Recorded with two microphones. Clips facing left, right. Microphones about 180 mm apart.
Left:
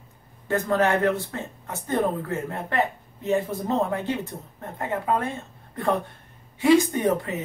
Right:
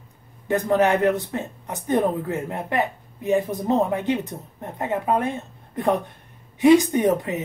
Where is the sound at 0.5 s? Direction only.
15° right (ahead or behind).